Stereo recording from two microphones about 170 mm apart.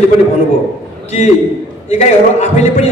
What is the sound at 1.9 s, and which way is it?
Speech, 40° left (ahead or behind).